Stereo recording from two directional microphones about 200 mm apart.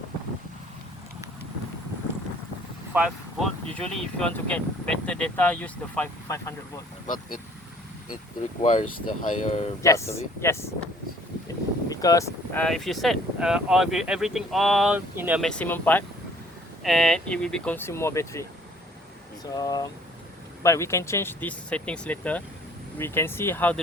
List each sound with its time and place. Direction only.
2.9 s speech: 5° right (ahead or behind); by 6.8 s 15° left (ahead or behind)
7.1 s speech: 40° left (ahead or behind)
8.6 s speech: 35° left (ahead or behind)
9.8 s speech: 15° left (ahead or behind)
11.9 s a sound: 15° left (ahead or behind)
12.6 s speech: centre (ahead or behind)
15.4 s speech: 5° left (ahead or behind)
19.5 s speech: 20° left (ahead or behind)